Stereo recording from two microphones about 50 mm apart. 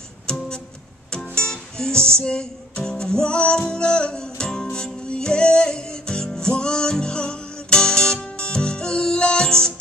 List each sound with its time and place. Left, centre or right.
0.3 s music: centre